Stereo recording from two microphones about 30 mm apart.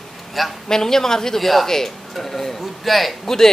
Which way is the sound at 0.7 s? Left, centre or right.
Centre.